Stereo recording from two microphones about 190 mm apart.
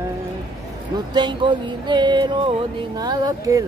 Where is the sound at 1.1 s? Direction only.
25° right (ahead or behind).